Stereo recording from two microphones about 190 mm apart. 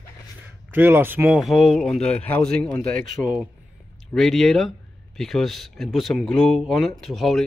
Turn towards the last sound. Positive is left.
turn(degrees=0)  # may be behind; listen again after turning